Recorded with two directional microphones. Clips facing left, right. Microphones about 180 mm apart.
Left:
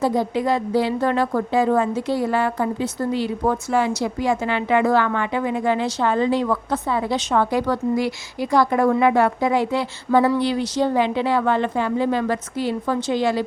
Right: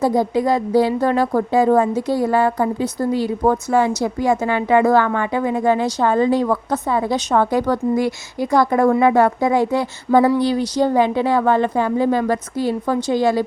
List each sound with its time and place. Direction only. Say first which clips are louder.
0.0 s a woman's voice: right 3 dB; 40° right (ahead or behind)